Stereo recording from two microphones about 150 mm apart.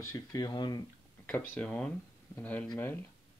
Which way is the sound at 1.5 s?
5° left (ahead or behind).